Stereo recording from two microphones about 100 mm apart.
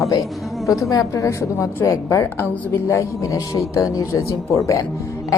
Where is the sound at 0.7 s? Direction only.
35° left (ahead or behind).